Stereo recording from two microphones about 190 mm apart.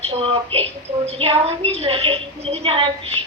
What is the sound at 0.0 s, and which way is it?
A woman's voice, 30° right (ahead or behind).